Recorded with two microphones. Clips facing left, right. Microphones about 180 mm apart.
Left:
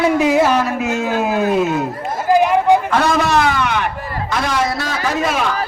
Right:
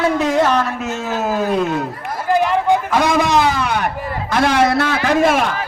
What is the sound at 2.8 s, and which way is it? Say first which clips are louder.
Speech: even; 10° right (ahead or behind).